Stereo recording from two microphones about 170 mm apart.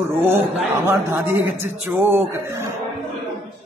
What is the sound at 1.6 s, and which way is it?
A woman's voice, 10° right (ahead or behind).